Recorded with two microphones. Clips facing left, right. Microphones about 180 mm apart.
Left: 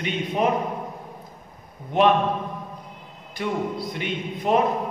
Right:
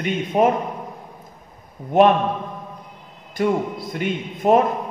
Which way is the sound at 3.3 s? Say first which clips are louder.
Right 5 dB; 45° right (ahead or behind).